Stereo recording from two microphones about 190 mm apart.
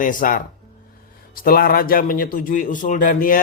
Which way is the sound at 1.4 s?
50° left (ahead or behind).